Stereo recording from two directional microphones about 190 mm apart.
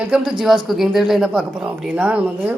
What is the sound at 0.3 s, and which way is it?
A woman's voice, centre (ahead or behind).